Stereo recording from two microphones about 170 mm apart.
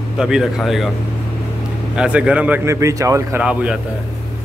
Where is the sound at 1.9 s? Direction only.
5° right (ahead or behind).